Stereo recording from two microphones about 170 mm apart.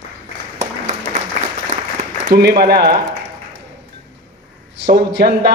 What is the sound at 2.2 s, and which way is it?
Speech, 70° right (ahead or behind).